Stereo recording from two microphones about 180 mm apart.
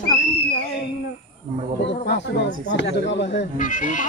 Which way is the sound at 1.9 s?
75° left (ahead or behind).